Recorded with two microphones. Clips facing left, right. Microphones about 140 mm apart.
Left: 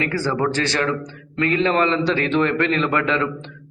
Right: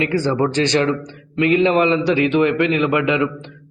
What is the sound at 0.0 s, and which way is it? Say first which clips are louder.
A man's voice: right 3 dB; 20° right (ahead or behind).